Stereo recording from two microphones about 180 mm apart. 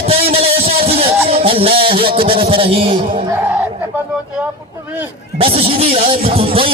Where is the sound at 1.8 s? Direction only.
30° right (ahead or behind).